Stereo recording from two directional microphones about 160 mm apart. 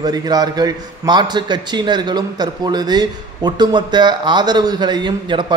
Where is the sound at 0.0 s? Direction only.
25° right (ahead or behind).